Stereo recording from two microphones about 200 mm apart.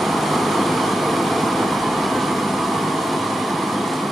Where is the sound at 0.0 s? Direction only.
Centre (ahead or behind).